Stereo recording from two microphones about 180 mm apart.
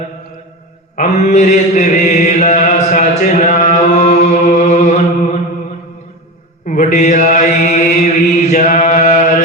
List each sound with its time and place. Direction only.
0.9 s chant: 40° left (ahead or behind)
6.7 s chant: 45° left (ahead or behind)